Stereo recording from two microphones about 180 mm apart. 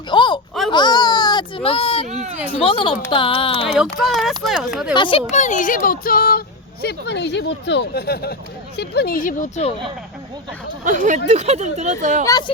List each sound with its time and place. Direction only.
0.1 s a sound: 25° left (ahead or behind)
0.7 s speech: 25° left (ahead or behind)
2.0 s speech: 40° right (ahead or behind)
2.5 s speech: 30° left (ahead or behind)
4.0 s speech: centre (ahead or behind)
4.9 s speech: 30° left (ahead or behind)
5.3 s speech: 40° left (ahead or behind)
6.8 s speech: 70° left (ahead or behind); by 9.7 s 40° left (ahead or behind)
10.8 s speech: 45° right (ahead or behind)
12.2 s speech: 20° left (ahead or behind)